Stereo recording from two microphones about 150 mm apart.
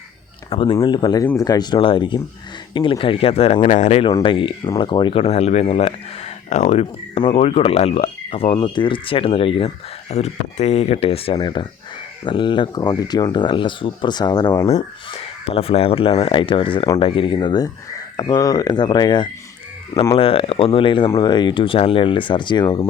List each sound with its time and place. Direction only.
0.5 s speech: 35° left (ahead or behind)
4.2 s speech: 35° left (ahead or behind)
5.2 s speech: 45° left (ahead or behind); by 14.5 s 30° left (ahead or behind)
14.8 s speech: 40° left (ahead or behind)